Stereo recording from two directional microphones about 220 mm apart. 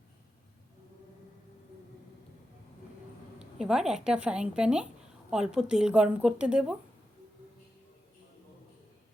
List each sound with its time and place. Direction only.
3.3 s speech: 5° right (ahead or behind)